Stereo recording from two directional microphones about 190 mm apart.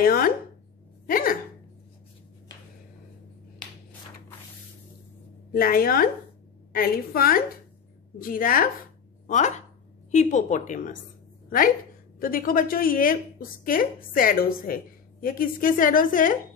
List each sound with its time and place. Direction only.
0.0 s speech: 50° left (ahead or behind)
5.5 s a woman's voice: 50° left (ahead or behind)
10.1 s a woman's voice: 40° left (ahead or behind)
12.2 s a woman's voice: 50° left (ahead or behind)